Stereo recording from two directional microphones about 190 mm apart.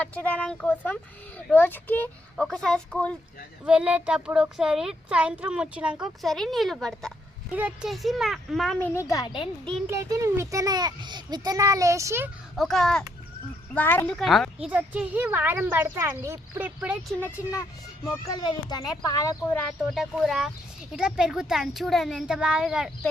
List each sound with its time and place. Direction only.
0.0 s speech: 10° left (ahead or behind)
3.6 s speech: 5° right (ahead or behind); by 9.5 s 25° left (ahead or behind)
9.9 s speech: 15° right (ahead or behind)
12.5 s speech: centre (ahead or behind)
18.0 s speech: 20° left (ahead or behind)
19.9 s speech: centre (ahead or behind)